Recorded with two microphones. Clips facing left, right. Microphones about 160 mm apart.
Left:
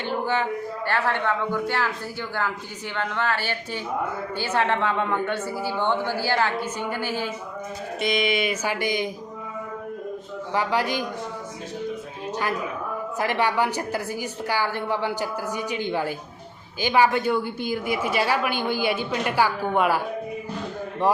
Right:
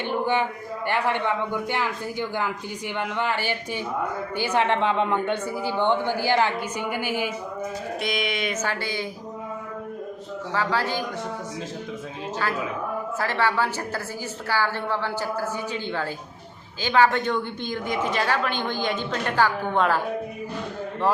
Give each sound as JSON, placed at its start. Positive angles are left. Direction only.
{"t": 0.0, "sound": "a sound", "side_deg": -15}
{"t": 0.9, "sound": "a woman's voice", "side_deg": -15}
{"t": 8.0, "sound": "a woman's voice", "side_deg": 0}
{"t": 10.5, "sound": "a woman's voice", "side_deg": 15}
{"t": 13.1, "sound": "a woman's voice", "side_deg": 15}